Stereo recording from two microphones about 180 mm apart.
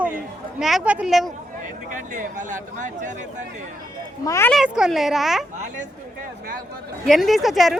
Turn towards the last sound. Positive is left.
turn(degrees=0)  # may be behind; listen again after turning